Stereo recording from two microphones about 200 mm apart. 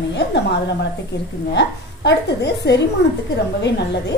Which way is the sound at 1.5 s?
60° left (ahead or behind).